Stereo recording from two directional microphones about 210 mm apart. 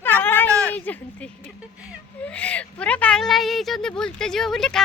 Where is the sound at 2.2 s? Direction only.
5° left (ahead or behind).